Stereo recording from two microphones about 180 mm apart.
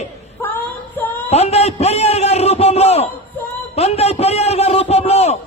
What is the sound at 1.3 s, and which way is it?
A man's voice, 35° left (ahead or behind).